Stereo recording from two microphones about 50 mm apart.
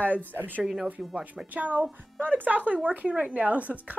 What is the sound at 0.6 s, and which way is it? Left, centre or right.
Speech, centre.